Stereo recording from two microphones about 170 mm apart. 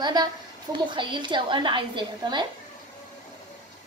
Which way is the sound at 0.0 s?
25° right (ahead or behind).